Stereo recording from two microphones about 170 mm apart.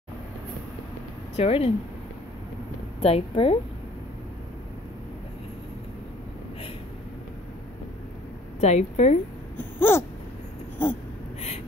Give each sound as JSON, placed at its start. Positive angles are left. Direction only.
{"t": 1.3, "sound": "speech", "side_deg": 35}
{"t": 3.0, "sound": "a woman's voice", "side_deg": 35}
{"t": 8.5, "sound": "a woman's voice", "side_deg": 40}
{"t": 9.6, "sound": "a sound", "side_deg": 15}